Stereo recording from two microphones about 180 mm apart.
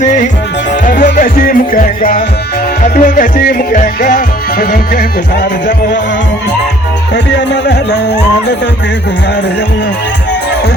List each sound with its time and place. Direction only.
0.0 s music: 45° left (ahead or behind)
7.3 s speech: 75° left (ahead or behind)